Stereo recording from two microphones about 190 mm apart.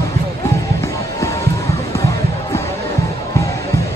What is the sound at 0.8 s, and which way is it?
Music, 15° left (ahead or behind).